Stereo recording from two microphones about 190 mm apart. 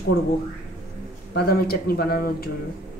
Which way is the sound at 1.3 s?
55° left (ahead or behind).